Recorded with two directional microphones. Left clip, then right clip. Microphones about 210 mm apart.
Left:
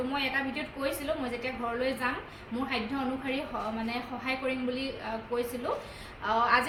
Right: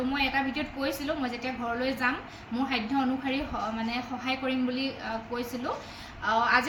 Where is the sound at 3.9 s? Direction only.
15° left (ahead or behind).